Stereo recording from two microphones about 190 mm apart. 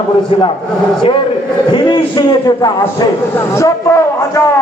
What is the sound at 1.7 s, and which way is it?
A man's voice, 25° left (ahead or behind).